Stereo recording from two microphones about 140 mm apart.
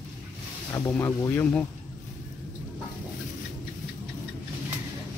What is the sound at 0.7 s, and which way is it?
Speech, 20° left (ahead or behind).